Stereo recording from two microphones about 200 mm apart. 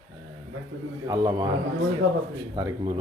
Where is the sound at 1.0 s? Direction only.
15° right (ahead or behind).